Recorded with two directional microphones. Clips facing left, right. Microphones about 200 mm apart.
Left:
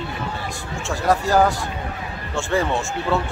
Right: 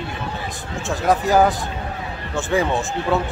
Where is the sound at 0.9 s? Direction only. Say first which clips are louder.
Right 1 dB; 20° right (ahead or behind).